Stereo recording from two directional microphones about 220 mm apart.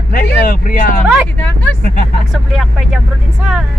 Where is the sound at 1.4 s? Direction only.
5° left (ahead or behind).